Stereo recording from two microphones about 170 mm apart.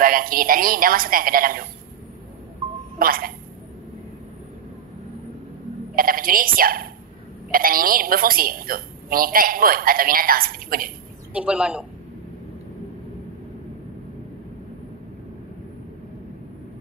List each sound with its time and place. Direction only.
0.0 s a woman's voice: 55° right (ahead or behind)
3.0 s a woman's voice: 60° right (ahead or behind)
5.9 s a woman's voice: 60° right (ahead or behind)
11.3 s a man's voice: 5° right (ahead or behind)